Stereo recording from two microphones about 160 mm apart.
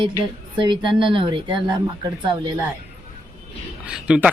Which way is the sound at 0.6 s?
30° right (ahead or behind).